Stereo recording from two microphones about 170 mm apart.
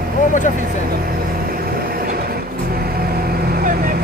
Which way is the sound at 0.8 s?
60° right (ahead or behind).